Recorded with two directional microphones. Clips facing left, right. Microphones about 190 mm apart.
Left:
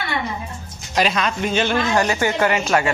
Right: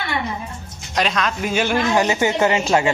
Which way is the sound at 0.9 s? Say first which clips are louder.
Left 1 dB; 5° left (ahead or behind).